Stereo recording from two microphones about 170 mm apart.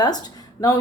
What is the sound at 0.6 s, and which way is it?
Speech, 5° left (ahead or behind).